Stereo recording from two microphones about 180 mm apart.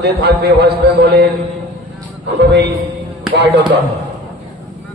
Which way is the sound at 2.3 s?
70° right (ahead or behind).